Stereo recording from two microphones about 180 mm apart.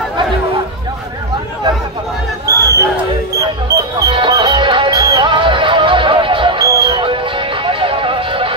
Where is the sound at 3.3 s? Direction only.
20° right (ahead or behind).